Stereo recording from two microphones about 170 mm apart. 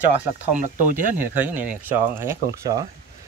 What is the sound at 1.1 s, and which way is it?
Speech, 10° right (ahead or behind).